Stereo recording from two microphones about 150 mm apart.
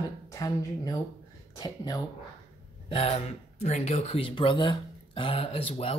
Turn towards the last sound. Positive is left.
turn(degrees=40)  # may be behind; listen again after turning